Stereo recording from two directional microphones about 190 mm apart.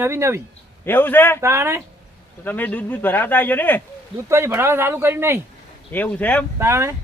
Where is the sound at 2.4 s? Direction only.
10° left (ahead or behind).